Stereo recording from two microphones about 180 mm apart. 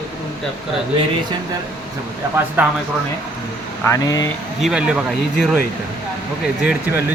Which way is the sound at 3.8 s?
20° left (ahead or behind).